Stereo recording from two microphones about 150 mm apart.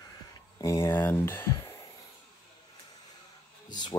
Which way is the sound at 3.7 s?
30° left (ahead or behind).